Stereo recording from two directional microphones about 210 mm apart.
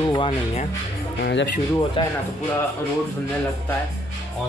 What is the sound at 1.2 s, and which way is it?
Speech, 50° left (ahead or behind).